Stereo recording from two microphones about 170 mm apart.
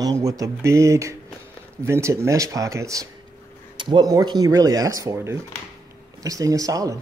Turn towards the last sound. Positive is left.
turn(degrees=-20)  # may be behind; listen again after turning